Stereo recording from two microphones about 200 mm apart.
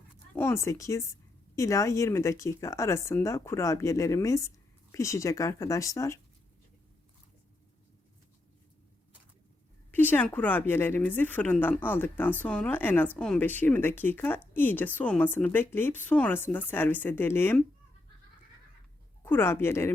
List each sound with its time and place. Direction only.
0.3 s speech: 10° left (ahead or behind)
9.9 s speech: 10° left (ahead or behind)
19.2 s speech: 10° left (ahead or behind)